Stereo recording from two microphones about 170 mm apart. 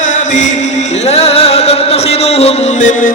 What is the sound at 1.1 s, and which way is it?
Music, 35° left (ahead or behind).